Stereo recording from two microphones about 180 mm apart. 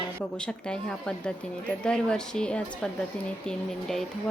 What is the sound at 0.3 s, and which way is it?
A woman's voice, 5° left (ahead or behind).